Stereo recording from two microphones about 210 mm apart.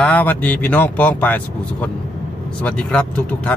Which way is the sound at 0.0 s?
10° left (ahead or behind).